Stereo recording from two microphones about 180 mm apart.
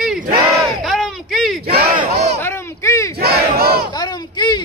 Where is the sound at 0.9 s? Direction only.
Centre (ahead or behind).